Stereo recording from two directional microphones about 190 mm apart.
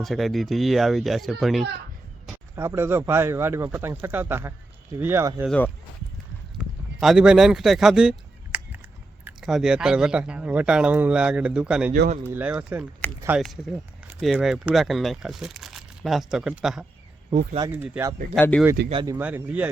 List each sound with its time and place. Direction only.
0.0 s speech: centre (ahead or behind)
2.6 s speech: 15° right (ahead or behind)
5.5 s speech: 10° left (ahead or behind)
6.6 s speech: 5° right (ahead or behind)
8.5 s a sound: 10° right (ahead or behind)
9.2 s speech: centre (ahead or behind)
18.3 s speech: 10° left (ahead or behind)
19.0 s speech: 10° right (ahead or behind)